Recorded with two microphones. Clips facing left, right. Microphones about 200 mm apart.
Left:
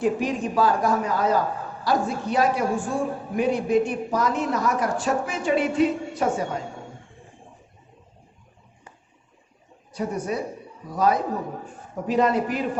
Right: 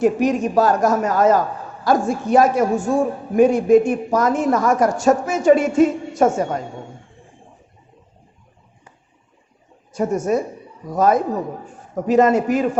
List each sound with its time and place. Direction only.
0.0 s a man's voice: 45° right (ahead or behind)
9.9 s a man's voice: 45° right (ahead or behind)